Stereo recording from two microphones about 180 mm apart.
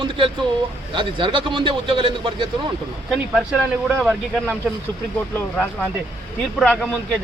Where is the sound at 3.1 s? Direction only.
5° right (ahead or behind).